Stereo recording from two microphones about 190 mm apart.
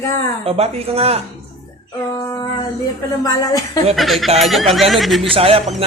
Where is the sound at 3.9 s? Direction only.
Centre (ahead or behind).